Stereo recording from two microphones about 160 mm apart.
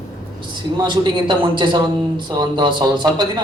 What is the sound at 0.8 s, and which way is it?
A man's voice, 30° right (ahead or behind).